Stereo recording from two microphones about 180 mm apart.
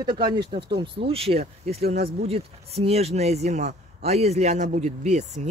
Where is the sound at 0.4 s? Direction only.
30° right (ahead or behind).